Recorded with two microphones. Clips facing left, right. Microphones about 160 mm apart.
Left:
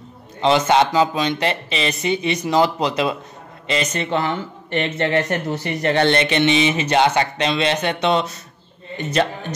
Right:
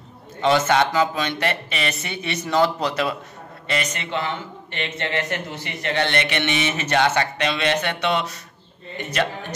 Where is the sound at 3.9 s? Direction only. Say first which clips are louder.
Left 5 dB; 45° left (ahead or behind).